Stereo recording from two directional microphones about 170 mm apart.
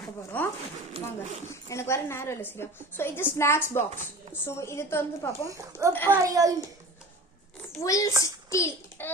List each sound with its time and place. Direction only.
0.3 s a woman's voice: 10° left (ahead or behind)
0.9 s speech: 35° right (ahead or behind)
1.7 s a woman's voice: 15° left (ahead or behind)
5.5 s speech: 20° right (ahead or behind)
5.9 s a woman's voice: 10° left (ahead or behind)
6.2 s speech: 20° right (ahead or behind)
7.8 s a child's voice: 20° left (ahead or behind)